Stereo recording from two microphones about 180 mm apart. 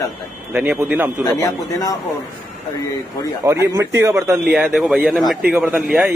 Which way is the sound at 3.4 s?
15° right (ahead or behind).